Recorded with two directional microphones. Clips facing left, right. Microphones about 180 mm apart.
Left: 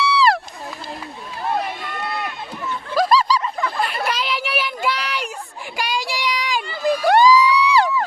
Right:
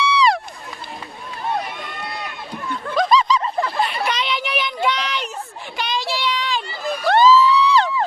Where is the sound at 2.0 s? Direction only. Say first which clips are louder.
Left 5 dB; 50° left (ahead or behind).